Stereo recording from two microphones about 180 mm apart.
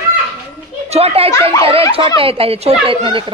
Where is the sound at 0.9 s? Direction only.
35° right (ahead or behind).